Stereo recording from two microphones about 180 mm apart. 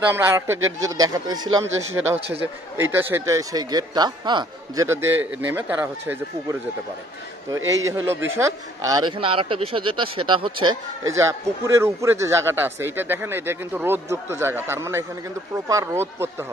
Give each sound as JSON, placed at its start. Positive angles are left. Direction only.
{"t": 0.1, "sound": "speech", "side_deg": -15}
{"t": 0.6, "sound": "speech", "side_deg": -90}
{"t": 0.8, "sound": "speech", "side_deg": -20}
{"t": 4.8, "sound": "speech", "side_deg": -15}
{"t": 7.8, "sound": "speech", "side_deg": -15}